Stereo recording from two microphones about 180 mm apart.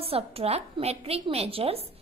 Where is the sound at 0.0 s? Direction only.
35° right (ahead or behind).